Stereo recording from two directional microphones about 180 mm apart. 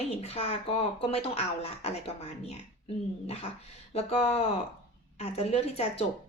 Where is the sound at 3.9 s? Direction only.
35° left (ahead or behind).